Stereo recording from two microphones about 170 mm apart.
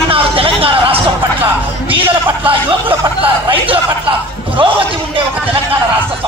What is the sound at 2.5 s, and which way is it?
A man's voice, 30° right (ahead or behind).